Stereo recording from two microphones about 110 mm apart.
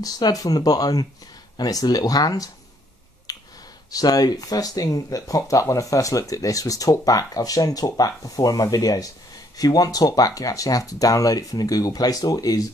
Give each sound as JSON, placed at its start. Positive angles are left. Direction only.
{"t": 0.0, "sound": "speech", "side_deg": 35}
{"t": 3.3, "sound": "finger snapping", "side_deg": 35}
{"t": 3.9, "sound": "speech", "side_deg": 35}